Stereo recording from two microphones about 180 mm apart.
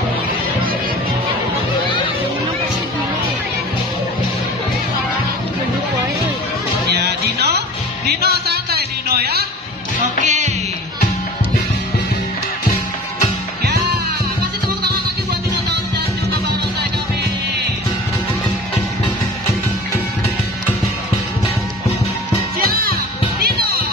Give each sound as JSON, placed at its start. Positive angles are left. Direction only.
{"t": 6.9, "sound": "music", "side_deg": -65}
{"t": 10.2, "sound": "music", "side_deg": -40}
{"t": 22.7, "sound": "music", "side_deg": -55}